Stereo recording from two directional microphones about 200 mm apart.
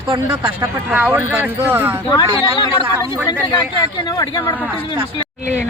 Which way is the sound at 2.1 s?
25° left (ahead or behind).